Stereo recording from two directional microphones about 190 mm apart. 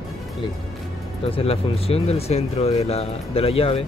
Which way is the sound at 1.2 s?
30° left (ahead or behind).